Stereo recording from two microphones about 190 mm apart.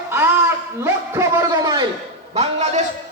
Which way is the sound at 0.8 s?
15° right (ahead or behind).